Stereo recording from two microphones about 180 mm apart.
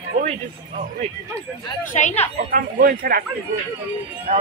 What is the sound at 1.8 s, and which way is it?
Speech, 40° left (ahead or behind).